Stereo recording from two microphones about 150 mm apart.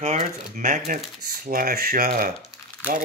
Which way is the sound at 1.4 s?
70° right (ahead or behind).